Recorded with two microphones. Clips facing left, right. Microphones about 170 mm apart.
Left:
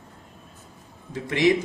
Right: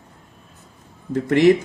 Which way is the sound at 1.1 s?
50° right (ahead or behind).